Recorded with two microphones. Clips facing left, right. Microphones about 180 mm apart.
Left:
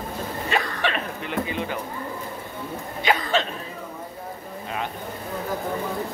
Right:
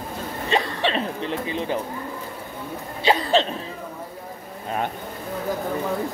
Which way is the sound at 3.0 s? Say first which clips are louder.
Right 4 dB; 35° right (ahead or behind).